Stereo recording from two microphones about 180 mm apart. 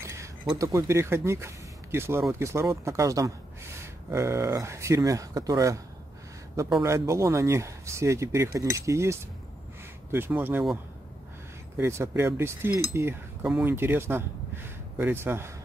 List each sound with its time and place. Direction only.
0.0 s a sound: 15° right (ahead or behind)
0.6 s speech: 15° right (ahead or behind)
6.8 s speech: 15° right (ahead or behind)
11.8 s speech: 15° right (ahead or behind)